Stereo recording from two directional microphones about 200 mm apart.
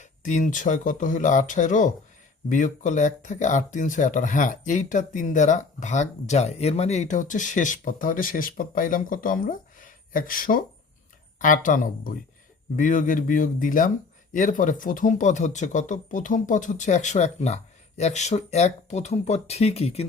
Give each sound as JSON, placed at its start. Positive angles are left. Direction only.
{"t": 0.0, "sound": "speech", "side_deg": 40}